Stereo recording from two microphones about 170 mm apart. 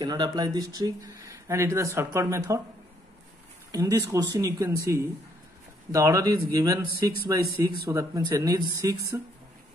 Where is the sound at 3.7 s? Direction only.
20° right (ahead or behind).